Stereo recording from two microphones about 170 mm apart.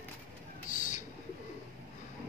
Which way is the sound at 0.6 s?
50° left (ahead or behind).